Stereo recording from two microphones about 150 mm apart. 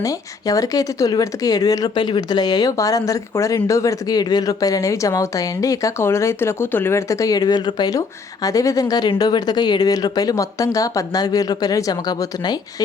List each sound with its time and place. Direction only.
0.0 s speech: 20° left (ahead or behind)